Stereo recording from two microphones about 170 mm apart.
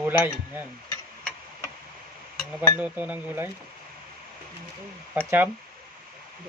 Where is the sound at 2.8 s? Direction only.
10° right (ahead or behind).